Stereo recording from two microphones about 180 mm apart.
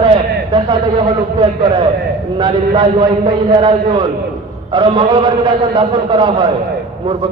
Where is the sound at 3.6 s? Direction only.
25° right (ahead or behind).